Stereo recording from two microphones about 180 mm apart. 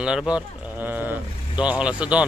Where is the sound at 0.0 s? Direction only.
5° right (ahead or behind).